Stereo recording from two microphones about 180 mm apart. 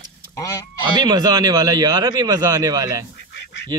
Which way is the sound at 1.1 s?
20° right (ahead or behind).